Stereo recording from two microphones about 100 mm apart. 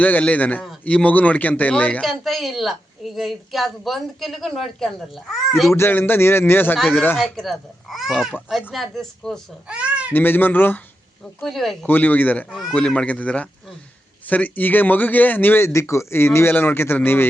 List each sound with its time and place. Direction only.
0.0 s a man's voice: 15° left (ahead or behind)
2.0 s a woman's voice: centre (ahead or behind)
5.7 s speech: 25° left (ahead or behind)
6.7 s a woman's voice: 5° right (ahead or behind)
9.6 s babbling: 10° right (ahead or behind)
10.1 s speech: 20° left (ahead or behind)
11.3 s a woman's voice: centre (ahead or behind)
11.9 s a man's voice: 20° left (ahead or behind)